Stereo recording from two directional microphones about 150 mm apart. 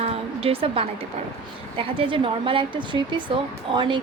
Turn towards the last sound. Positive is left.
turn(degrees=-30)  # may be behind; listen again after turning